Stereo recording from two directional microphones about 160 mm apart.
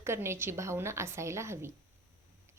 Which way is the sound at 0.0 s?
15° right (ahead or behind).